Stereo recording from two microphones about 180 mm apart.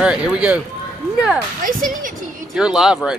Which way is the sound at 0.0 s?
5° right (ahead or behind).